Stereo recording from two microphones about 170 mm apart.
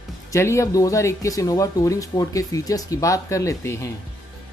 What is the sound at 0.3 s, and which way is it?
Speech, 15° left (ahead or behind).